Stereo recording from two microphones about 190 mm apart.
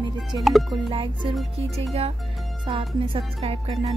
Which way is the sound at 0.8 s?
25° right (ahead or behind).